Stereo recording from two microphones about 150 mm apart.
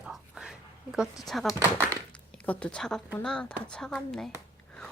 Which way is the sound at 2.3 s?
10° left (ahead or behind).